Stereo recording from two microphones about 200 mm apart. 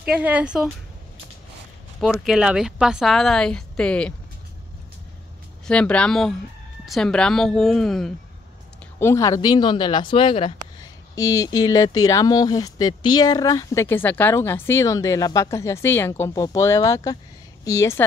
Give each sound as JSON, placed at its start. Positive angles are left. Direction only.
{"t": 0.0, "sound": "a woman's voice", "side_deg": -5}
{"t": 2.2, "sound": "a woman's voice", "side_deg": -5}
{"t": 5.7, "sound": "a woman's voice", "side_deg": 5}
{"t": 9.0, "sound": "speech", "side_deg": 15}